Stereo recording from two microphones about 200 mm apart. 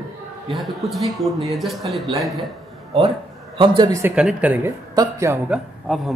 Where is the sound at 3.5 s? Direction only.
25° right (ahead or behind).